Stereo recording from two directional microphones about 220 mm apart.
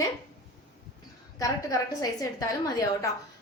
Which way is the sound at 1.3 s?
15° left (ahead or behind).